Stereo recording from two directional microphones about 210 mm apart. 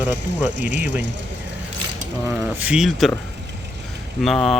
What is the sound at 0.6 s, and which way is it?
Speech, 55° right (ahead or behind).